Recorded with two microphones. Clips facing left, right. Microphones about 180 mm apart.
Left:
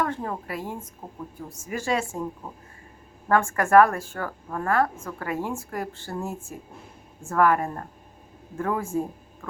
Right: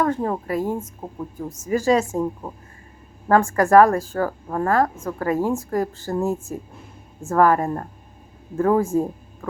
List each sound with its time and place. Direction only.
0.0 s a woman's voice: 40° right (ahead or behind)
3.2 s a woman's voice: 35° right (ahead or behind)